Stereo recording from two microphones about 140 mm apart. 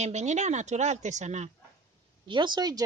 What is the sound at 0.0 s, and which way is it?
Speech, 55° right (ahead or behind).